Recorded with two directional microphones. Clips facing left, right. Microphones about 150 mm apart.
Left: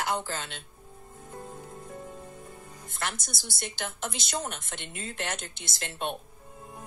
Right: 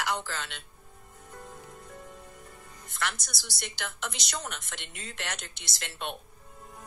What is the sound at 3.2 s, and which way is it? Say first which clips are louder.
Speech: left 3 dB; 50° left (ahead or behind).